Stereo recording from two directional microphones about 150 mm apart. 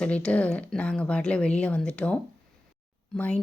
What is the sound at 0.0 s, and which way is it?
Speech, 5° left (ahead or behind).